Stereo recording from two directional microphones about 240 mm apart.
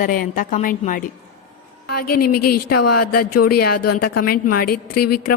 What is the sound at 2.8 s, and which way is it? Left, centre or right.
Speech, left.